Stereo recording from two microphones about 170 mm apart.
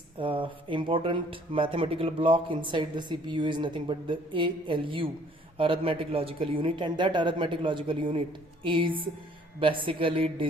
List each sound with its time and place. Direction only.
0.2 s speech: 30° right (ahead or behind)